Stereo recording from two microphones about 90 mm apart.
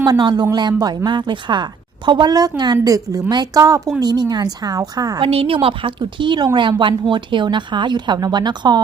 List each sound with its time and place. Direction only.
0.0 s a woman's voice: 50° right (ahead or behind)
4.0 s speech: 50° right (ahead or behind)
5.2 s a woman's voice: 90° right; by 8.8 s 55° right (ahead or behind)